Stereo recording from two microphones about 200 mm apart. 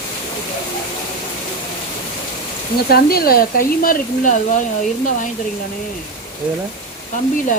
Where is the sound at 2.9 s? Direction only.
50° left (ahead or behind).